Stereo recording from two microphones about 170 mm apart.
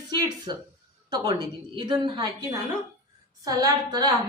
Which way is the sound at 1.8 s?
30° right (ahead or behind).